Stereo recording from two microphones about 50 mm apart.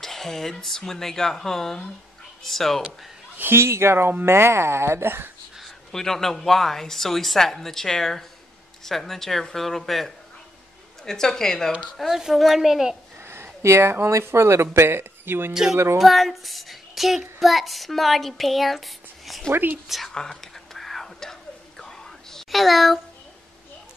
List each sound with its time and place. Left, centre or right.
0.0 s speech: centre
3.3 s speech: right
5.9 s speech: centre
8.8 s child singing: centre
11.1 s speech: centre
12.2 s a woman's voice: centre
13.2 s a sound: right
14.1 s speech: right
15.5 s a woman's voice: centre
16.0 s child singing: centre
20.1 s whispering: centre